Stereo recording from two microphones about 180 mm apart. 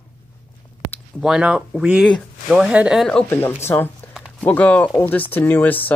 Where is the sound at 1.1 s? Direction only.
5° right (ahead or behind).